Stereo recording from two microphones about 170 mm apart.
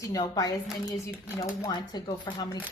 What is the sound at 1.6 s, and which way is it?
Speech, 25° left (ahead or behind).